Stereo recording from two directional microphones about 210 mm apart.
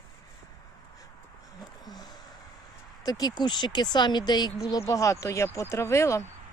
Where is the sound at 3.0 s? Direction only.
20° left (ahead or behind).